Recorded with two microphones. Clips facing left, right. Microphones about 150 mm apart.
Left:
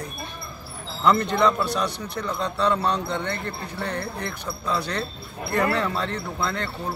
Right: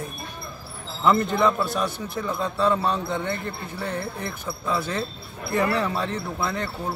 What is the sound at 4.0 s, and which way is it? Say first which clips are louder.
Speech: even; 20° right (ahead or behind).